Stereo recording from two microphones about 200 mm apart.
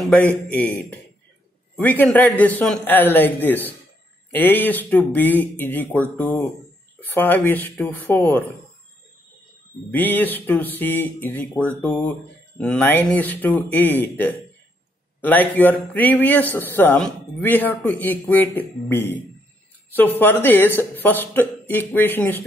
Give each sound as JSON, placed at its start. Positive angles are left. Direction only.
{"t": 0.0, "sound": "a man's voice", "side_deg": 5}
{"t": 9.8, "sound": "a man's voice", "side_deg": 10}
{"t": 15.1, "sound": "a man's voice", "side_deg": 10}